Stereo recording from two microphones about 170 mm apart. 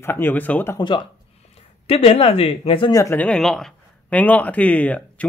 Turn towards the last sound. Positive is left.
turn(degrees=10)  # may be behind; listen again after turning